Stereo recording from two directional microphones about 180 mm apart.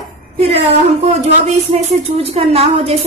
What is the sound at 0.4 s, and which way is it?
A woman's voice, 35° right (ahead or behind).